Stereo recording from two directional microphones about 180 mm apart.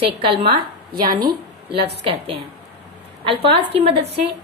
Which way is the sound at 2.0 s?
35° right (ahead or behind).